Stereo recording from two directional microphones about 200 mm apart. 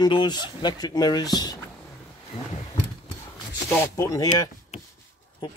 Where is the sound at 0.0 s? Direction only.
20° left (ahead or behind).